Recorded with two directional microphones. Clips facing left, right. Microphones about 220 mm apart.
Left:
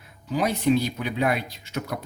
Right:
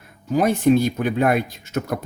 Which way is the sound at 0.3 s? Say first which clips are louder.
Right 5 dB; 50° right (ahead or behind).